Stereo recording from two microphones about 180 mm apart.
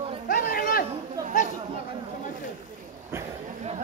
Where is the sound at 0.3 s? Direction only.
50° left (ahead or behind).